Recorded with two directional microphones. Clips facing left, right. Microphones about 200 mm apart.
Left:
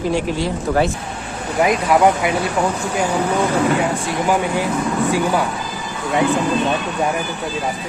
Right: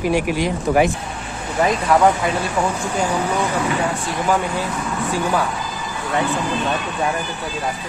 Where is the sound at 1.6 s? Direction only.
10° left (ahead or behind).